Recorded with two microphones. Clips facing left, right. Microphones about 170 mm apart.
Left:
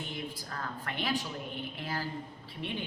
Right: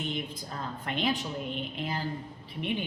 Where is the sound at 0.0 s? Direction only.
20° right (ahead or behind).